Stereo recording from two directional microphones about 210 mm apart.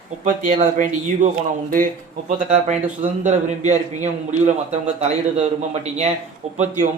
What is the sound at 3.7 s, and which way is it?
Speech, 35° right (ahead or behind).